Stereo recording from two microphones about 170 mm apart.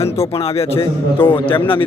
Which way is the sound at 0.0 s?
35° left (ahead or behind).